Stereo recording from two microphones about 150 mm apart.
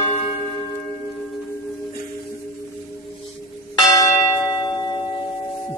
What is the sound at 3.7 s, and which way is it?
Church bell, 25° left (ahead or behind).